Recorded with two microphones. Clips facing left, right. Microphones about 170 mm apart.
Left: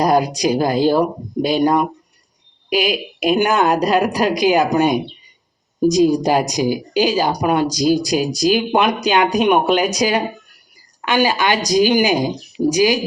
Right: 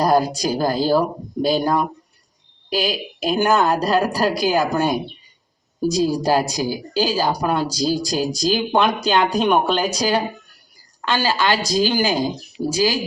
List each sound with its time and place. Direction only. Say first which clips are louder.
0.0 s a woman's voice: left 2 dB; 10° left (ahead or behind)